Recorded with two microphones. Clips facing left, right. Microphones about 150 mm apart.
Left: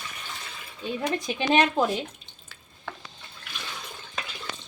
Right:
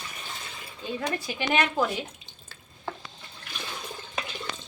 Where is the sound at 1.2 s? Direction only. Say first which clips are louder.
Left 5 dB; 20° left (ahead or behind).